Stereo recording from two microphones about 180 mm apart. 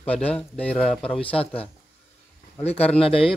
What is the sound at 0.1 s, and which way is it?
Speech, 5° left (ahead or behind).